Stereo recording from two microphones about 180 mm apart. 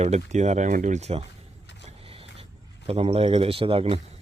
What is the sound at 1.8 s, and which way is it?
Vehicle, 30° right (ahead or behind).